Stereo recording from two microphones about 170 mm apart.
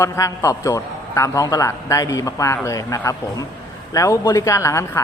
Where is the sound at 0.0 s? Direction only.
20° left (ahead or behind).